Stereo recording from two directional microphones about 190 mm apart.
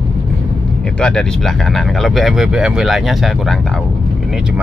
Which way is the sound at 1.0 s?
5° left (ahead or behind).